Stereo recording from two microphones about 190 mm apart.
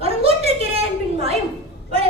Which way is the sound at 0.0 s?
30° right (ahead or behind).